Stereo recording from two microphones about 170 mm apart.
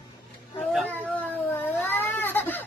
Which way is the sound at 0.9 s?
10° left (ahead or behind).